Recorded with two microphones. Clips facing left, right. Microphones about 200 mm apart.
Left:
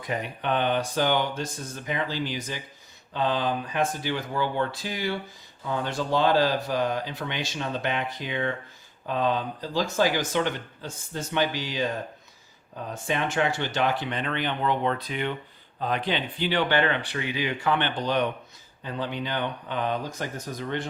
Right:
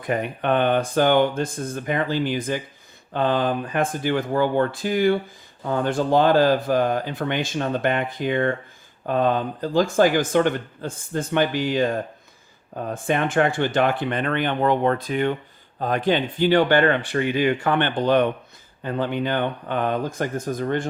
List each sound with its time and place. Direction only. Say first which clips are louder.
0.0 s speech: right 6 dB; 55° right (ahead or behind)